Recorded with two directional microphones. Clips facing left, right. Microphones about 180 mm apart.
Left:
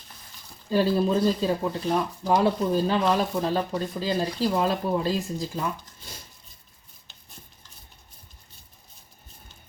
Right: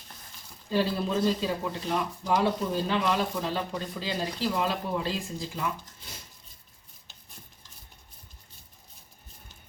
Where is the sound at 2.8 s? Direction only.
40° left (ahead or behind).